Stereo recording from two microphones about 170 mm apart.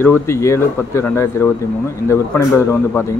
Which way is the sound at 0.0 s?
15° left (ahead or behind).